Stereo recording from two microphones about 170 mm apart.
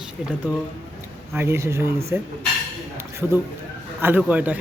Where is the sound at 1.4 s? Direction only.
15° right (ahead or behind).